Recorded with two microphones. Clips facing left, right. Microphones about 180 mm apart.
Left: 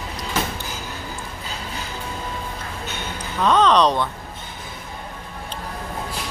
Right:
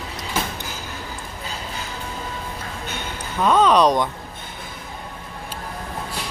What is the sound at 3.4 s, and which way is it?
Speech, 10° right (ahead or behind).